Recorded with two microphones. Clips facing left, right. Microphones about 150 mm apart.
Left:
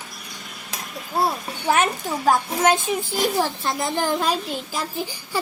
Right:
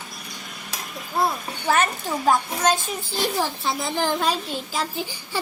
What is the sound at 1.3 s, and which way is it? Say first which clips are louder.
Speech: left 1 dB; 15° left (ahead or behind).